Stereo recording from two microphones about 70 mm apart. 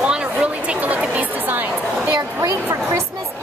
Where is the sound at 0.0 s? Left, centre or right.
Centre.